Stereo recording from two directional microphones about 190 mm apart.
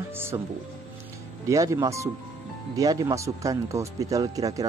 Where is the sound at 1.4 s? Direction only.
15° right (ahead or behind).